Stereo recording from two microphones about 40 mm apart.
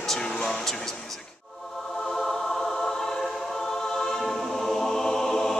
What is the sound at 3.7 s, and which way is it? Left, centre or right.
Choir, centre.